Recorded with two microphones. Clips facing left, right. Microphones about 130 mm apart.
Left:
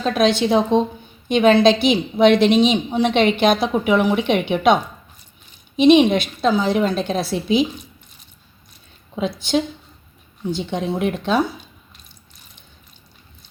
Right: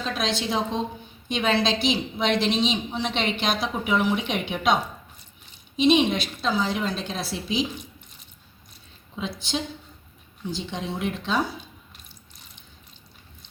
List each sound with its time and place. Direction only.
0.0 s a woman's voice: 60° left (ahead or behind)
10.5 s a woman's voice: 60° left (ahead or behind)